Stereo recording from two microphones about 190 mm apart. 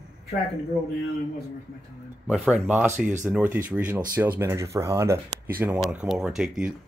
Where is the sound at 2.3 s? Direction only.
5° right (ahead or behind).